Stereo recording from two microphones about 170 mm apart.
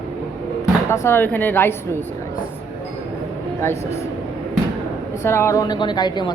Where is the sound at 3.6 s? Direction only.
15° left (ahead or behind).